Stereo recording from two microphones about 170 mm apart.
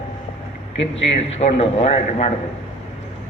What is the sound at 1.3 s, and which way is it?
A man's voice, 35° left (ahead or behind).